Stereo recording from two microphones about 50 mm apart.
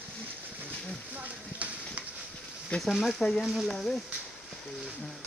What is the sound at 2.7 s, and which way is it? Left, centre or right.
Speech, left.